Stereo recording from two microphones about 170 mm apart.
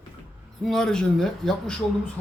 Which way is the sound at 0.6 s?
5° left (ahead or behind).